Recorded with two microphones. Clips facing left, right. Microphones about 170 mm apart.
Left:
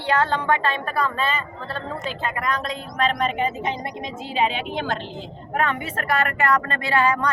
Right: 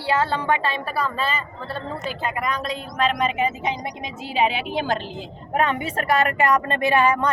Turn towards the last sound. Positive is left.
turn(degrees=-20)  # may be behind; listen again after turning